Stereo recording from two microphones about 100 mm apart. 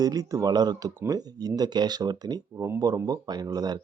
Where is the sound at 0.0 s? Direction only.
35° right (ahead or behind).